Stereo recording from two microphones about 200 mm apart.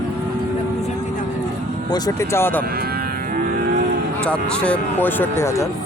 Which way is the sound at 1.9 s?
20° left (ahead or behind).